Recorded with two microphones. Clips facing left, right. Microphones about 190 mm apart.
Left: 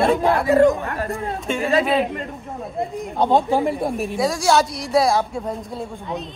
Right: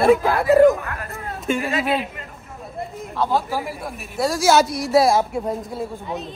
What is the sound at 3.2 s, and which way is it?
Speech, 25° left (ahead or behind).